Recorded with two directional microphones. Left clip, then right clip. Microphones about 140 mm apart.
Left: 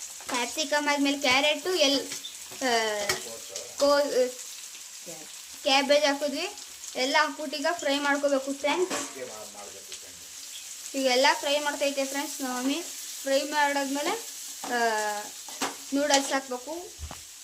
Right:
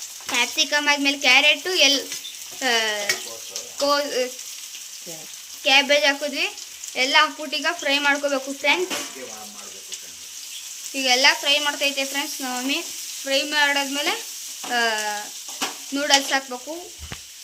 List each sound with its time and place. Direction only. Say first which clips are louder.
0.3 s speech: right 7 dB; 15° left (ahead or behind)
5.6 s speech: right 5 dB; 10° left (ahead or behind)
10.9 s speech: right 5 dB; 20° left (ahead or behind)